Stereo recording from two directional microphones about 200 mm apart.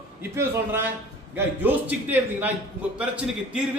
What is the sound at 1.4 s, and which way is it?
A man's voice, 10° right (ahead or behind).